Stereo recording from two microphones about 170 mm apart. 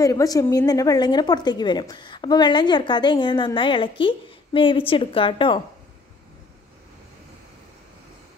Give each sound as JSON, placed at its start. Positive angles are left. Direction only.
{"t": 0.0, "sound": "a woman's voice", "side_deg": 20}